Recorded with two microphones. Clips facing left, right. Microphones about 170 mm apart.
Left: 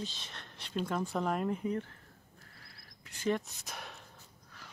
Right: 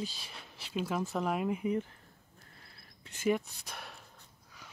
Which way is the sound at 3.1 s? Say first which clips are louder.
Right 2 dB; 30° right (ahead or behind).